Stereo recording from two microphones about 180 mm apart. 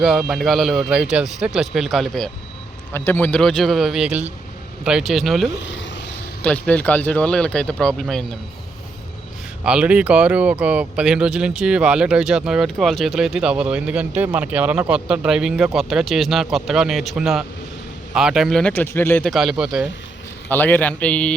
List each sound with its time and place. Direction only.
0.0 s speech: centre (ahead or behind)
9.6 s speech: 5° right (ahead or behind); by 19.3 s 10° left (ahead or behind)
19.3 s speech: centre (ahead or behind)
20.5 s speech: 10° left (ahead or behind)